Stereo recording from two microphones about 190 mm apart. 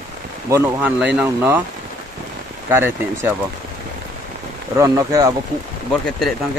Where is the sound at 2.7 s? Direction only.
10° right (ahead or behind).